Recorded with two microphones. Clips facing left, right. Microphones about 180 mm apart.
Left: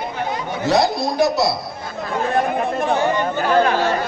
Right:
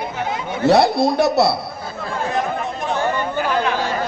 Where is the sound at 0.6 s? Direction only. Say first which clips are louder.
Right 4 dB; 65° right (ahead or behind).